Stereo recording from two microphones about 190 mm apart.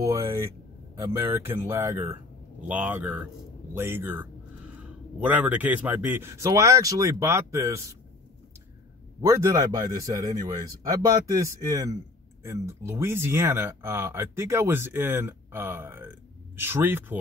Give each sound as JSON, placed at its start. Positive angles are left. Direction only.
{"t": 0.0, "sound": "speech", "side_deg": -15}
{"t": 9.2, "sound": "speech", "side_deg": -15}